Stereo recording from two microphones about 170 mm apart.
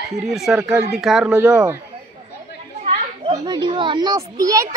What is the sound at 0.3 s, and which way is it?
Speech, centre (ahead or behind).